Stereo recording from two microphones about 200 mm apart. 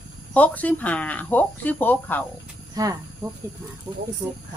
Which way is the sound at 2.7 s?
15° right (ahead or behind).